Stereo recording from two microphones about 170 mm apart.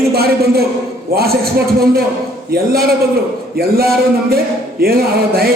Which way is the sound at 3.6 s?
65° right (ahead or behind).